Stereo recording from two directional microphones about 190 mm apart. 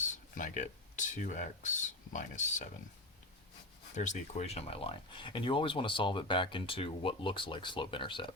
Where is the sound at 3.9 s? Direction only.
40° left (ahead or behind).